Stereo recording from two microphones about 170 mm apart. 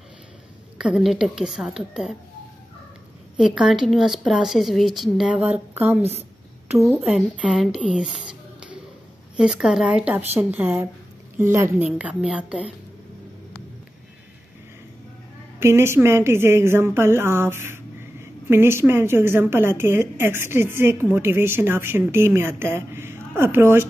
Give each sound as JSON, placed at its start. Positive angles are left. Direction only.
{"t": 0.7, "sound": "a woman's voice", "side_deg": -5}
{"t": 3.3, "sound": "a woman's voice", "side_deg": -5}
{"t": 15.6, "sound": "a woman's voice", "side_deg": -15}